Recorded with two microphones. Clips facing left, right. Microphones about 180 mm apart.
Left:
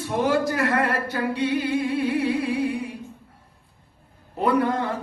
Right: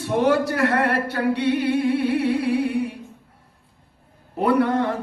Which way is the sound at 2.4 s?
65° right (ahead or behind).